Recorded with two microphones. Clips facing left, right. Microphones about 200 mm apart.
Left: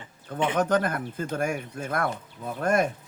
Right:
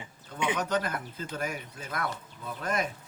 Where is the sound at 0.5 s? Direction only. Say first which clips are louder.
Left 7 dB; 50° left (ahead or behind).